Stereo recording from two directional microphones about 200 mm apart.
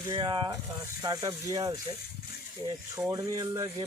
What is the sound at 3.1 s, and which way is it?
Speech, 20° right (ahead or behind).